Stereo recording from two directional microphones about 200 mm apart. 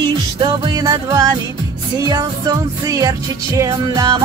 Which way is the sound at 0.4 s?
20° right (ahead or behind).